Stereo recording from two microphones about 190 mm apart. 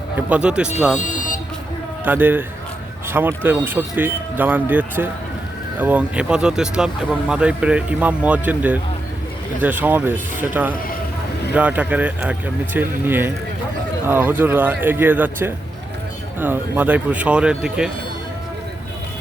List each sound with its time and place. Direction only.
0.2 s speech: 10° right (ahead or behind)
0.9 s vehicle: 40° left (ahead or behind)
2.0 s speech: 10° right (ahead or behind)